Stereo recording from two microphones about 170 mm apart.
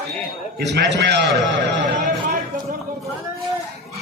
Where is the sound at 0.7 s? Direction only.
85° right.